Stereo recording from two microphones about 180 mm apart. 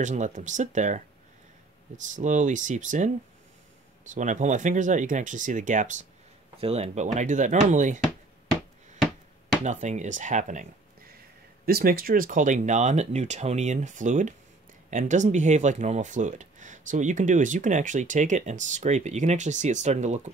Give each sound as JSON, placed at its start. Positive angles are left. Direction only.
{"t": 0.0, "sound": "speech", "side_deg": -45}
{"t": 2.0, "sound": "speech", "side_deg": -45}
{"t": 4.1, "sound": "speech", "side_deg": -45}
{"t": 9.7, "sound": "speech", "side_deg": -40}
{"t": 11.6, "sound": "speech", "side_deg": -55}